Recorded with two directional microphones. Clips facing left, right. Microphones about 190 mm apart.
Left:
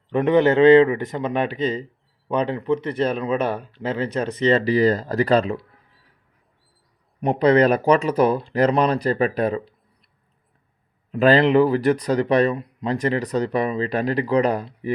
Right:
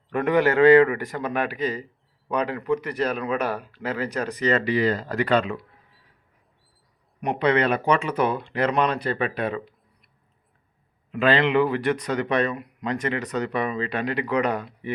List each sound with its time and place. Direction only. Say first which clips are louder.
0.1 s speech: left 4 dB; 20° left (ahead or behind); by 5.6 s 35° left (ahead or behind)
7.2 s speech: left 6 dB; 35° left (ahead or behind)
11.1 s speech: left 5 dB; 40° left (ahead or behind)